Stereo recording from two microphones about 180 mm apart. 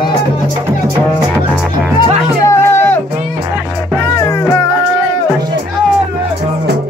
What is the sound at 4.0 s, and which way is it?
Music, 15° left (ahead or behind).